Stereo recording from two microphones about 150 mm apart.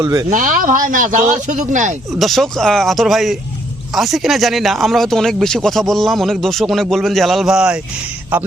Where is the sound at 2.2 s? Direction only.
Centre (ahead or behind).